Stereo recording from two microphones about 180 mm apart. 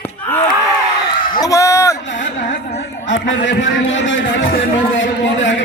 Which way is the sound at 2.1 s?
45° left (ahead or behind).